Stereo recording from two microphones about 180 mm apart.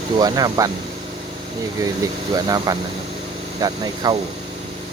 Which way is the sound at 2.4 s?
20° right (ahead or behind).